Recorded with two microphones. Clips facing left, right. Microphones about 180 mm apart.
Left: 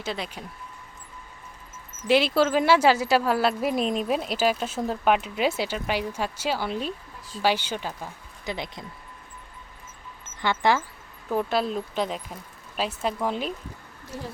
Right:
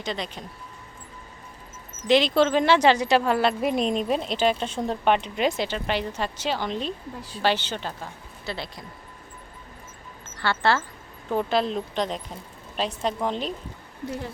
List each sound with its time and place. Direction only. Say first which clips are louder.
0.0 s speech: right 1 dB; 5° left (ahead or behind)
2.0 s a woman's voice: right 1 dB; 10° left (ahead or behind)
7.2 s speech: right 2 dB; 65° right (ahead or behind)
7.4 s speech: even; 10° left (ahead or behind)
10.4 s speech: even; 15° left (ahead or behind)
11.3 s a woman's voice: right 1 dB; centre (ahead or behind)